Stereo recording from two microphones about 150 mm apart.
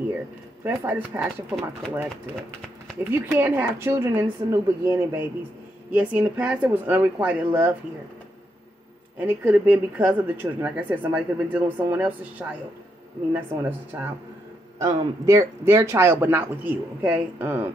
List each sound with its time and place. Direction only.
0.7 s speech: 10° right (ahead or behind)
3.0 s speech: 15° right (ahead or behind)
9.2 s speech: 10° right (ahead or behind)